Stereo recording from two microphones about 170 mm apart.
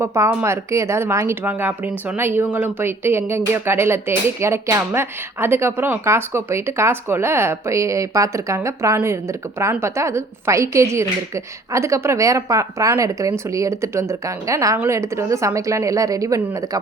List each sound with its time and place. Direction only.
0.0 s speech: 15° right (ahead or behind)